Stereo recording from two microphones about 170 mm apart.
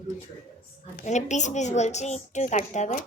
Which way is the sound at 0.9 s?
45° left (ahead or behind).